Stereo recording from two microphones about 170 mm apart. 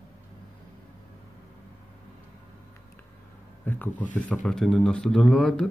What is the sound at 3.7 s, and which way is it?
Speech, 10° left (ahead or behind).